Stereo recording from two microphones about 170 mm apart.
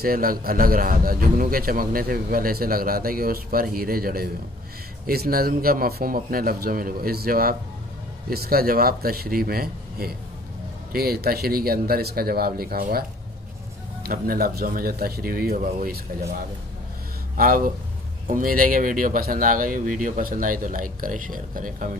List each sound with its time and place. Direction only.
0.0 s a man's voice: 60° right (ahead or behind)
14.0 s a man's voice: 60° right (ahead or behind)
17.4 s a man's voice: 55° right (ahead or behind)